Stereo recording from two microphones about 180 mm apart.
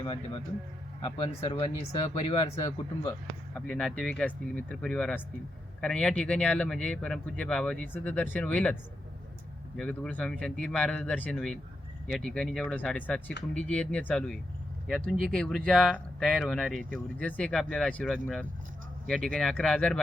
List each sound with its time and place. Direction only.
1.0 s speech: 30° left (ahead or behind)
3.7 s speech: 5° left (ahead or behind)